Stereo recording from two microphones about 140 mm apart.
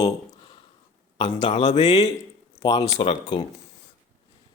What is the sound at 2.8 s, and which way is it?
Speech, 45° left (ahead or behind).